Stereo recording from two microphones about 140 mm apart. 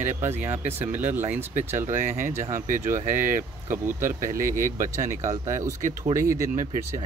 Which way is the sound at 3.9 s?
20° right (ahead or behind).